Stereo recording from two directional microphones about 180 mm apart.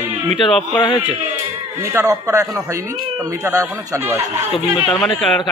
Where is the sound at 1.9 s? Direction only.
15° right (ahead or behind).